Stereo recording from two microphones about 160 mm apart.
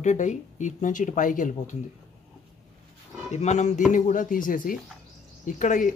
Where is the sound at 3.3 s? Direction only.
45° left (ahead or behind).